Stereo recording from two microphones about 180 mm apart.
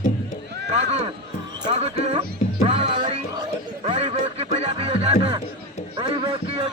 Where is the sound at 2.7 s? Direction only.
30° right (ahead or behind).